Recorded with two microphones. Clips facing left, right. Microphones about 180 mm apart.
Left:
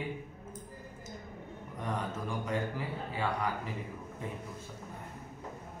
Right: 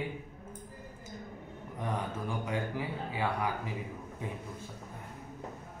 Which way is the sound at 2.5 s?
15° right (ahead or behind).